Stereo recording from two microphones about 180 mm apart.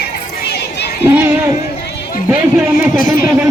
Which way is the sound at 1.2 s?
10° right (ahead or behind).